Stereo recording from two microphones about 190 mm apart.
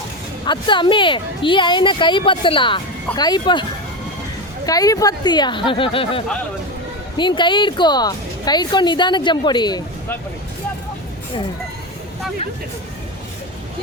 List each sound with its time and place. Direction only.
0.4 s a woman's voice: 25° left (ahead or behind)